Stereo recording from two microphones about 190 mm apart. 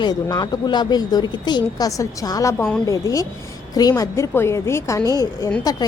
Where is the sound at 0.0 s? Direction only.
20° left (ahead or behind).